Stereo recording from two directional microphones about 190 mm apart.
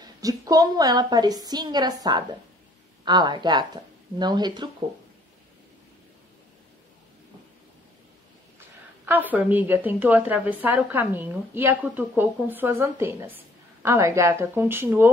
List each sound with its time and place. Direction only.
0.0 s a woman's voice: 20° right (ahead or behind)
8.5 s a woman's voice: 10° right (ahead or behind)